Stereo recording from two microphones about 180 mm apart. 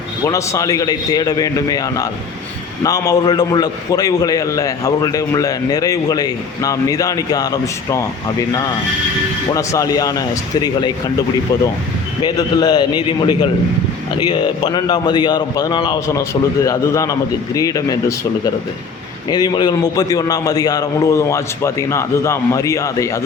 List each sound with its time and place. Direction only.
0.3 s a man's voice: 15° left (ahead or behind)
9.6 s a man's voice: 20° left (ahead or behind)
12.2 s a man's voice: 25° left (ahead or behind)
19.3 s a man's voice: 25° left (ahead or behind)